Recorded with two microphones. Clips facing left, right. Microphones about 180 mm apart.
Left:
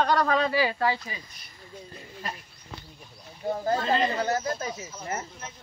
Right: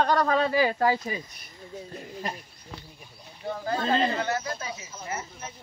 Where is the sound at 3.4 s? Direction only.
35° left (ahead or behind).